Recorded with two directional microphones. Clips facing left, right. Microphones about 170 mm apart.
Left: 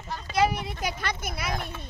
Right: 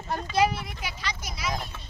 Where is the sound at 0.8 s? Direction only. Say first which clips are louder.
Left 6 dB; 55° left (ahead or behind).